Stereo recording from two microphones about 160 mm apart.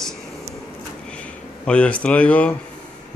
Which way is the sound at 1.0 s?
5° left (ahead or behind).